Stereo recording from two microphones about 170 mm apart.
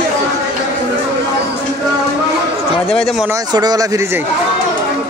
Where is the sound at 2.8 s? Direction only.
Centre (ahead or behind).